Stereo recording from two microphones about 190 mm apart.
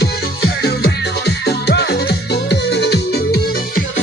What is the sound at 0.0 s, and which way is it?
Music, 55° left (ahead or behind).